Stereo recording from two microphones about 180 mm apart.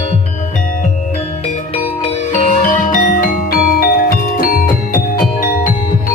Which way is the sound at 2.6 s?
50° left (ahead or behind).